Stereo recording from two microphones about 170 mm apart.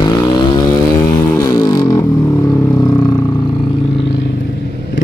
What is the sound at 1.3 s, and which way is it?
Music, 20° left (ahead or behind).